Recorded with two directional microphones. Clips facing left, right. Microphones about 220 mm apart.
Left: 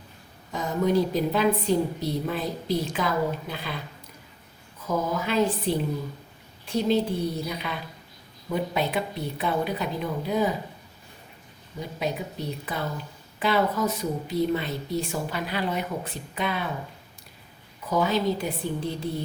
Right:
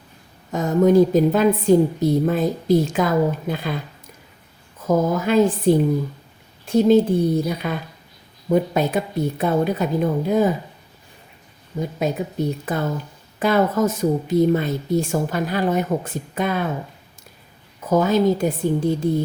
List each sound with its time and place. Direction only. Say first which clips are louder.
0.5 s speech: right 8 dB; 45° right (ahead or behind)
4.8 s speech: right 8 dB; 45° right (ahead or behind)
11.8 s speech: right 7 dB; 45° right (ahead or behind)
17.7 s speech: right 7 dB; 45° right (ahead or behind)